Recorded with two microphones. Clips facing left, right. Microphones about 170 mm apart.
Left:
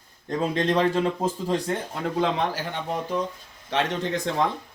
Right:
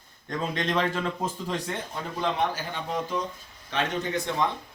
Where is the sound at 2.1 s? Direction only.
90° left.